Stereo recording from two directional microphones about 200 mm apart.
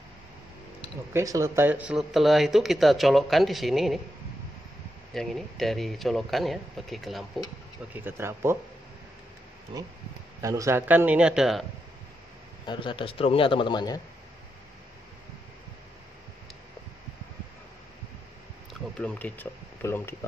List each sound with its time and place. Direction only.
1.1 s speech: 15° right (ahead or behind); by 4.0 s centre (ahead or behind)
5.1 s speech: centre (ahead or behind)
7.9 s a man's voice: 10° right (ahead or behind)
10.4 s a man's voice: 15° right (ahead or behind)
12.6 s a man's voice: 25° left (ahead or behind)
18.7 s speech: 5° left (ahead or behind)